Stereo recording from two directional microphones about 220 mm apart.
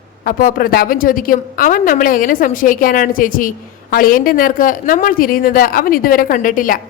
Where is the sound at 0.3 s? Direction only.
40° left (ahead or behind).